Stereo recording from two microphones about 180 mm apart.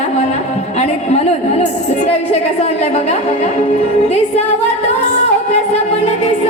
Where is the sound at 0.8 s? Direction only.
40° left (ahead or behind).